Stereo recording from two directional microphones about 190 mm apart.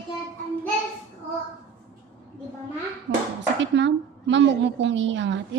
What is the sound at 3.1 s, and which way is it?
A woman's voice, 70° right (ahead or behind).